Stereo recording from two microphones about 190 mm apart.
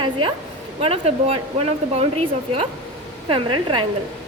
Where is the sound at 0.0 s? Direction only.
25° right (ahead or behind).